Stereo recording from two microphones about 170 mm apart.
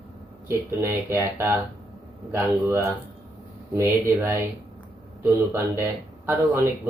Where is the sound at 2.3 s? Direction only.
15° right (ahead or behind).